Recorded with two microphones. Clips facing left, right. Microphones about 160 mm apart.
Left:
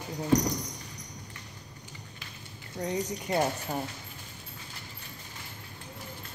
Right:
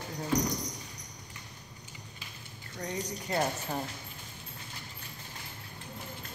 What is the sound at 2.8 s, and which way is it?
Speech, 20° left (ahead or behind).